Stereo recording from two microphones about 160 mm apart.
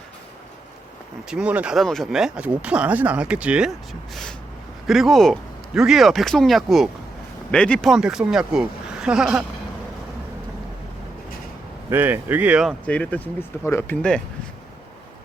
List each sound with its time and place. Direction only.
1.3 s speech: 5° right (ahead or behind)
11.9 s speech: 10° right (ahead or behind)
12.8 s speech: 10° left (ahead or behind)